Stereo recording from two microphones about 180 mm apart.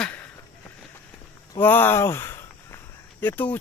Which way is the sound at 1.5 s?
10° left (ahead or behind).